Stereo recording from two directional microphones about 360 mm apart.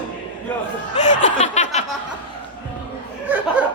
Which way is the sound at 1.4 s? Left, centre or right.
Centre.